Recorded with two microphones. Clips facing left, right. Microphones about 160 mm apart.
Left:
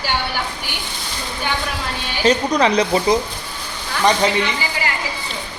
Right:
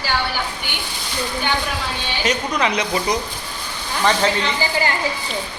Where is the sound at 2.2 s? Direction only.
35° left (ahead or behind).